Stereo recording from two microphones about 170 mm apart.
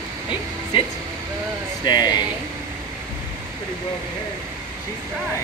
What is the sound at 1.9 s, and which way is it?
Speech, 25° left (ahead or behind).